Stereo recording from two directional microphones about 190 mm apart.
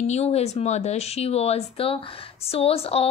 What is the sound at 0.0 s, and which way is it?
Speech, 35° left (ahead or behind).